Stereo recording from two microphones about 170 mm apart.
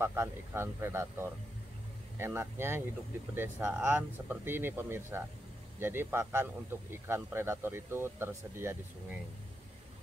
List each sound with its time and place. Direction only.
0.0 s a man's voice: 15° right (ahead or behind)
2.1 s a man's voice: 15° right (ahead or behind)